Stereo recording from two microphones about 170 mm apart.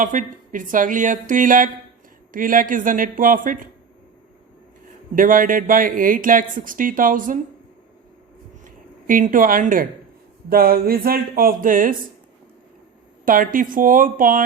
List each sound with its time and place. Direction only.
0.0 s speech: 50° right (ahead or behind)
5.1 s speech: 55° right (ahead or behind)
8.6 s speech: 50° right (ahead or behind)
13.2 s speech: 55° right (ahead or behind)